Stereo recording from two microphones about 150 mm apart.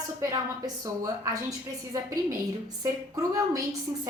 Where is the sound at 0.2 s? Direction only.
25° right (ahead or behind).